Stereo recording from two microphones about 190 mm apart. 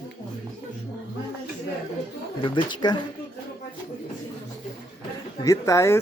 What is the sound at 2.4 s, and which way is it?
Speech, 25° left (ahead or behind).